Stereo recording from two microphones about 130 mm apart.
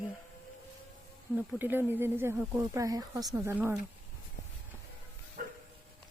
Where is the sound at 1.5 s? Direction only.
15° right (ahead or behind).